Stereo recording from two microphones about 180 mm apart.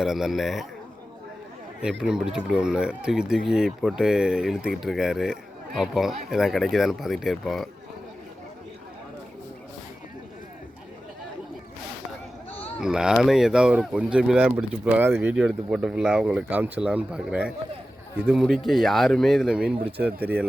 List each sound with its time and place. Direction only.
0.0 s speech: centre (ahead or behind)
1.8 s speech: 5° right (ahead or behind)
12.8 s speech: 5° right (ahead or behind)